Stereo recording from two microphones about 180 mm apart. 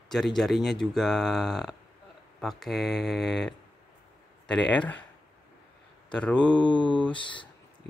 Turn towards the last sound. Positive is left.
turn(degrees=25)  # may be behind; listen again after turning